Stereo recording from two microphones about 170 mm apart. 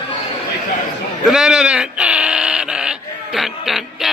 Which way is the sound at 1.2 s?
5° right (ahead or behind).